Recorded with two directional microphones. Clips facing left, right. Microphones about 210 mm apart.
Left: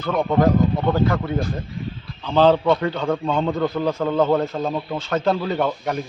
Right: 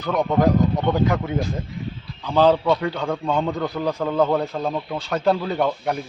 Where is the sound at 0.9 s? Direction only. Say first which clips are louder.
Even; 10° right (ahead or behind).